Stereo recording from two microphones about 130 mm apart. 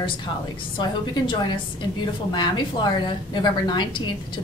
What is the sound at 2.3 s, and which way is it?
A woman's voice, 35° left (ahead or behind).